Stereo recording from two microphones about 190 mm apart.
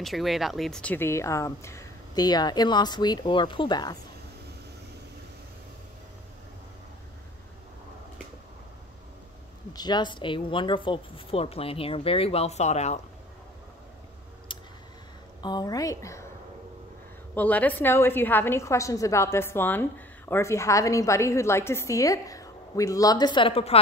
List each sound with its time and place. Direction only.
0.0 s speech: centre (ahead or behind); by 4.0 s 20° left (ahead or behind)
9.7 s speech: 20° left (ahead or behind)
14.5 s clicking: 25° left (ahead or behind)
15.4 s a woman's voice: 20° left (ahead or behind)
17.3 s a woman's voice: 10° left (ahead or behind); by 23.8 s 30° left (ahead or behind)